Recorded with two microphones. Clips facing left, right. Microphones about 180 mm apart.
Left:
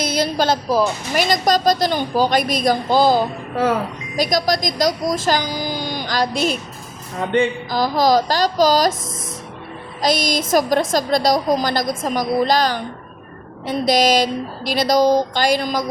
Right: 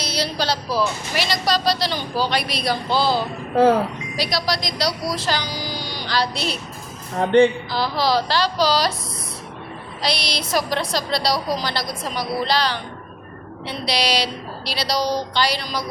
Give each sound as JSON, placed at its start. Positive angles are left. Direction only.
{"t": 0.0, "sound": "a woman's voice", "side_deg": 50}
{"t": 7.7, "sound": "a woman's voice", "side_deg": 45}
{"t": 10.0, "sound": "a woman's voice", "side_deg": 45}